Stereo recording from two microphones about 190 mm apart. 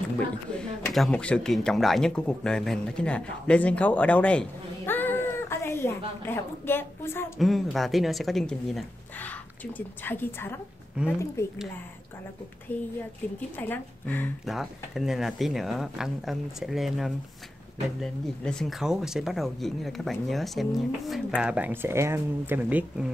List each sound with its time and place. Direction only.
0.6 s speech: 5° left (ahead or behind)
7.3 s speech: centre (ahead or behind)
12.7 s speech: 10° left (ahead or behind)
14.4 s speech: centre (ahead or behind)